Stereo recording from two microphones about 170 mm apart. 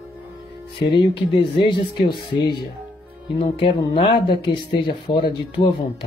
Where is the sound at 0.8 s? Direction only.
30° left (ahead or behind).